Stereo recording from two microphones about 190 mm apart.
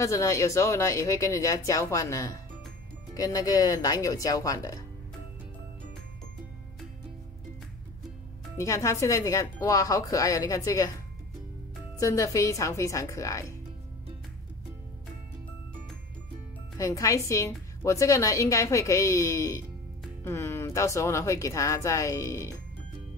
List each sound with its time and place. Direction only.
0.0 s a woman's voice: 15° left (ahead or behind)
8.5 s a woman's voice: 15° left (ahead or behind)
12.0 s a woman's voice: 15° left (ahead or behind)
16.7 s a woman's voice: 15° left (ahead or behind)